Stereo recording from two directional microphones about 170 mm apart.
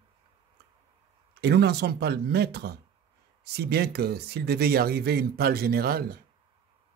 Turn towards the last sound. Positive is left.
turn(degrees=-65)  # may be behind; listen again after turning